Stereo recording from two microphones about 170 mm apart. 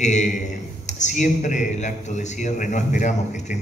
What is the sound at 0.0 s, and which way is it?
A man's voice, 45° left (ahead or behind).